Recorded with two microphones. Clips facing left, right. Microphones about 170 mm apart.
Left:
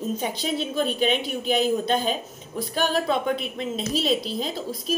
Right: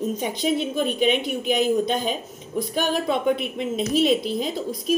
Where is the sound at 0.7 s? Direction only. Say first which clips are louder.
Right 2 dB; centre (ahead or behind).